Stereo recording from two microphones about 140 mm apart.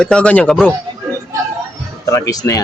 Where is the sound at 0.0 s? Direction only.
5° left (ahead or behind).